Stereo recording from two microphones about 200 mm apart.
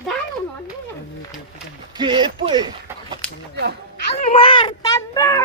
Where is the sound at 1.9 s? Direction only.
25° right (ahead or behind).